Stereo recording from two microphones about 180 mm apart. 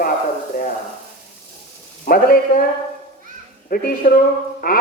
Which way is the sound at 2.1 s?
55° left (ahead or behind).